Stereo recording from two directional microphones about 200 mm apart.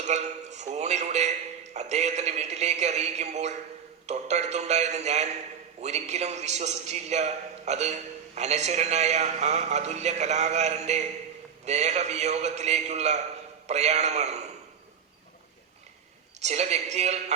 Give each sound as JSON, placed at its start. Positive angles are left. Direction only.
{"t": 0.0, "sound": "a man's voice", "side_deg": -35}
{"t": 16.4, "sound": "a man's voice", "side_deg": -35}